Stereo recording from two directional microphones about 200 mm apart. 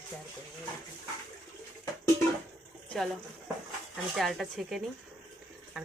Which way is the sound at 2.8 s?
Centre (ahead or behind).